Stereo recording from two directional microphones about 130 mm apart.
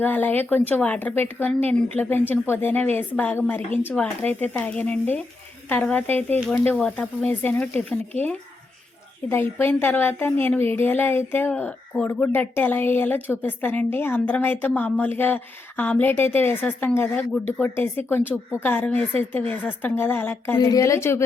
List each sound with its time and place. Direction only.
0.0 s a woman's voice: 15° left (ahead or behind)
20.6 s a woman's voice: 25° left (ahead or behind)